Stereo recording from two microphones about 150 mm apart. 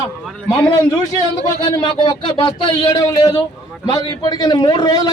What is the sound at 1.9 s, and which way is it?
A man's voice, 30° left (ahead or behind).